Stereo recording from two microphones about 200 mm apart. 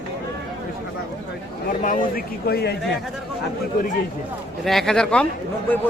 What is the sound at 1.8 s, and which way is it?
Speech, 45° left (ahead or behind).